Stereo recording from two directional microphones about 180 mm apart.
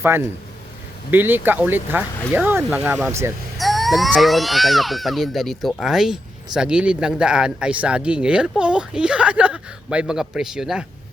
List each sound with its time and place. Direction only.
0.0 s speech: 15° right (ahead or behind)
3.6 s speech: centre (ahead or behind)